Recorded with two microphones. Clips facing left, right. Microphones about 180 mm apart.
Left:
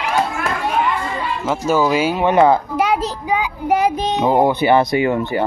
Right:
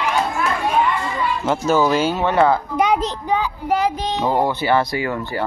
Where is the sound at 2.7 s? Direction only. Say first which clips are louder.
Even; 5° left (ahead or behind).